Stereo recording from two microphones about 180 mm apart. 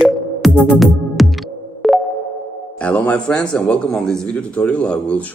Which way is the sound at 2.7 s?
5° left (ahead or behind).